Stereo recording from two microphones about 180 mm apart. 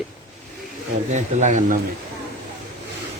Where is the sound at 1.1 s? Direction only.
40° right (ahead or behind).